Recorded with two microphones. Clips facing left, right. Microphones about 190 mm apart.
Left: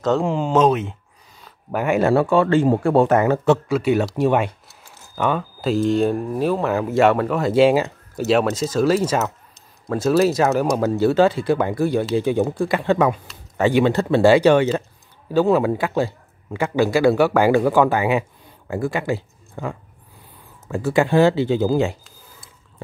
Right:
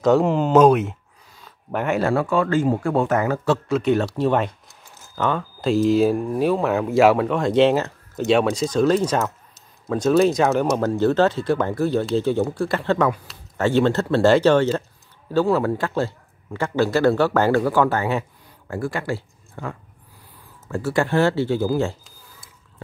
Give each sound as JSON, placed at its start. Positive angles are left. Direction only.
{"t": 0.0, "sound": "speech", "side_deg": -10}
{"t": 2.0, "sound": "speech", "side_deg": 25}
{"t": 3.6, "sound": "speech", "side_deg": 10}
{"t": 5.7, "sound": "a man's voice", "side_deg": 0}